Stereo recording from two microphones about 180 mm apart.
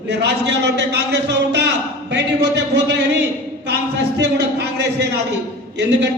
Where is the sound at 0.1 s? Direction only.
70° right (ahead or behind).